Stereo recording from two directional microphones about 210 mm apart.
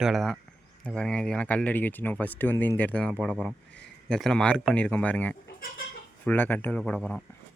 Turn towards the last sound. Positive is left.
turn(degrees=5)  # may be behind; listen again after turning